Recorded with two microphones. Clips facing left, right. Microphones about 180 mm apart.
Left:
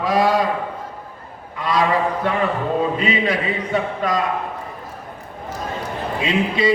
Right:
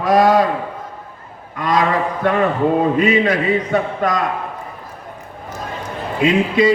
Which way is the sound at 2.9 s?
50° right (ahead or behind).